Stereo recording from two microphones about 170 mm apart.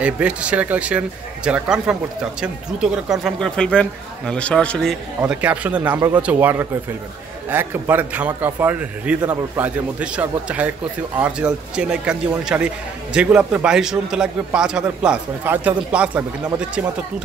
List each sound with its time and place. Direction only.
0.0 s a man's voice: 5° right (ahead or behind)
5.2 s a man's voice: 10° right (ahead or behind)